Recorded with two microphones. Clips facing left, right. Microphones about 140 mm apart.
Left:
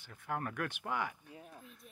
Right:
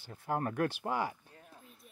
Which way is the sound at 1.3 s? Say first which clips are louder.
Left 4 dB; 5° left (ahead or behind).